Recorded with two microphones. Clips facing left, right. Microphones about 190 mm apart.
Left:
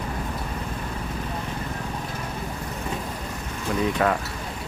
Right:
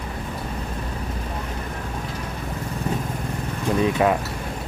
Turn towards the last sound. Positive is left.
turn(degrees=-20)  # may be behind; listen again after turning